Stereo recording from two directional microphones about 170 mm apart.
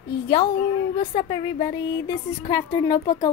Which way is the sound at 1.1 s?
30° left (ahead or behind).